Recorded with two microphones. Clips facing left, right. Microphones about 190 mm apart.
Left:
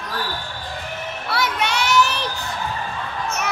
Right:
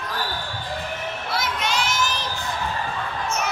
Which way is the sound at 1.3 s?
65° left (ahead or behind).